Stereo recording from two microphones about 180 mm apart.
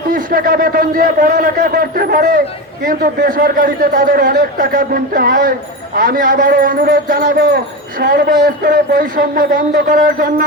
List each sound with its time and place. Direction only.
0.1 s a man's voice: 50° right (ahead or behind)